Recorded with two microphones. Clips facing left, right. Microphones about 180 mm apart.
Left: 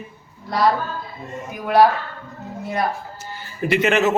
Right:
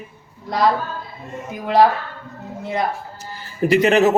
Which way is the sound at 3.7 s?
35° right (ahead or behind).